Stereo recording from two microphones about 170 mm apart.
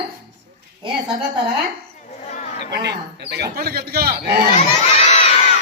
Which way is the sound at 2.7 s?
80° right.